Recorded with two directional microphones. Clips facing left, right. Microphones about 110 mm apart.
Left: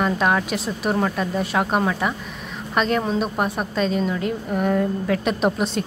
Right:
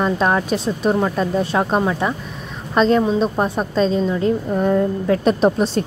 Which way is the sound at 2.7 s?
30° right (ahead or behind).